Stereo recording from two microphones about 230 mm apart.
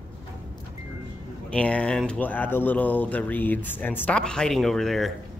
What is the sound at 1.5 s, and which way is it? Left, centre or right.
Speech, centre.